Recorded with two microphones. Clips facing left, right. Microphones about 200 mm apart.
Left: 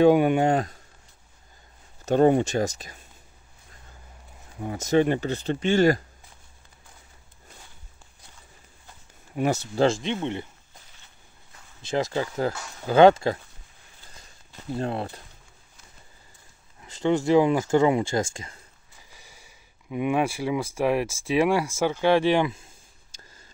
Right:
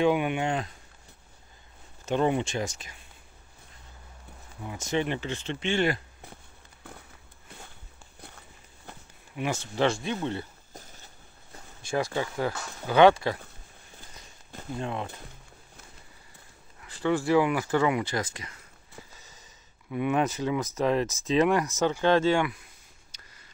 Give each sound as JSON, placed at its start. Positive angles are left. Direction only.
{"t": 0.0, "sound": "speech", "side_deg": 40}
{"t": 2.0, "sound": "speech", "side_deg": 45}
{"t": 4.6, "sound": "speech", "side_deg": 40}
{"t": 9.3, "sound": "speech", "side_deg": 40}
{"t": 10.0, "sound": "speech", "side_deg": 20}
{"t": 10.7, "sound": "a sound", "side_deg": -40}
{"t": 11.8, "sound": "speech", "side_deg": 20}
{"t": 12.1, "sound": "speech", "side_deg": 35}
{"t": 13.1, "sound": "speech", "side_deg": 25}
{"t": 14.8, "sound": "speech", "side_deg": 35}
{"t": 16.8, "sound": "speech", "side_deg": 25}
{"t": 19.1, "sound": "speech", "side_deg": 10}
{"t": 22.4, "sound": "speech", "side_deg": 25}